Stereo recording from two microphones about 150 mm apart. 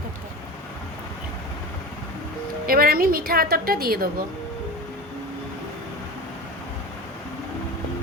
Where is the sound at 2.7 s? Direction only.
80° right.